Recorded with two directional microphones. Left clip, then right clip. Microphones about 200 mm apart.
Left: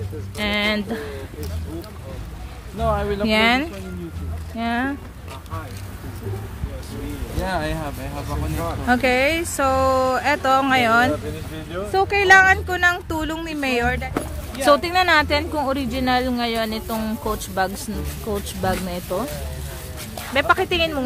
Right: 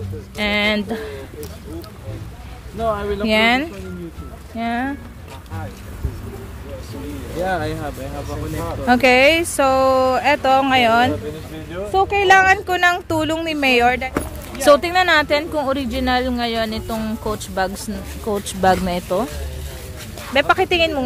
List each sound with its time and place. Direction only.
0.4 s speech: 15° right (ahead or behind)
2.8 s speech: 50° left (ahead or behind)
3.3 s speech: 10° right (ahead or behind)
7.4 s speech: 50° left (ahead or behind)
8.8 s speech: 20° right (ahead or behind)
14.1 s speech: 10° right (ahead or behind)
20.3 s speech: 10° right (ahead or behind)